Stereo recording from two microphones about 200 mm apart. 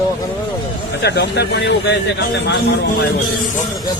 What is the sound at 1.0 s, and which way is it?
A man's voice, 55° left (ahead or behind).